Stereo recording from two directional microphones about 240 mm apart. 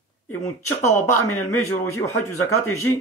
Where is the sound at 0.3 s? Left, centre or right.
Centre.